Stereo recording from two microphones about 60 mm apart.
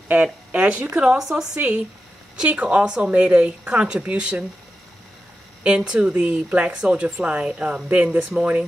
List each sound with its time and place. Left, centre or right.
0.1 s speech: right
5.8 s speech: centre